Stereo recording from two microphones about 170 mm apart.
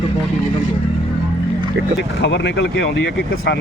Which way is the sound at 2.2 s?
90° left.